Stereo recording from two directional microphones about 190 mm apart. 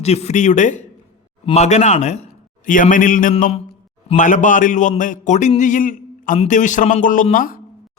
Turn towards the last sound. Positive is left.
turn(degrees=45)  # may be behind; listen again after turning